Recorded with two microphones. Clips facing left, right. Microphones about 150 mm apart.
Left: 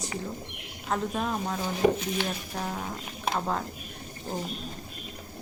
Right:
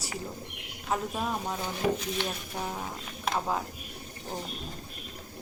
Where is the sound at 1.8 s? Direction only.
50° left (ahead or behind).